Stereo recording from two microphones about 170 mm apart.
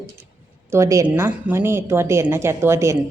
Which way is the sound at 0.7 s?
15° right (ahead or behind).